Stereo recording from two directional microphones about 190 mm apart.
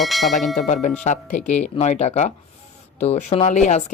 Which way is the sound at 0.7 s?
35° left (ahead or behind).